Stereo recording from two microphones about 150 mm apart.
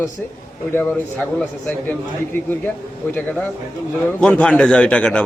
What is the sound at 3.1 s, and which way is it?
A man's voice, 10° left (ahead or behind).